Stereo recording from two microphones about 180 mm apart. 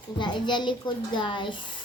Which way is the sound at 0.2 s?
25° left (ahead or behind).